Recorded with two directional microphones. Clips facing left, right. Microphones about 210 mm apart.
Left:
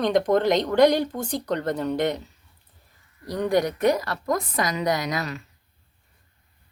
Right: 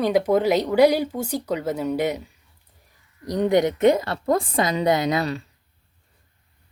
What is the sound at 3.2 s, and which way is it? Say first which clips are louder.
A woman's voice: right 3 dB; 20° right (ahead or behind).